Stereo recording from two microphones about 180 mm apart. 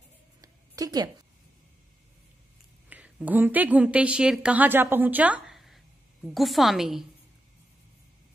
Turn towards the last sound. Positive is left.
turn(degrees=0)  # may be behind; listen again after turning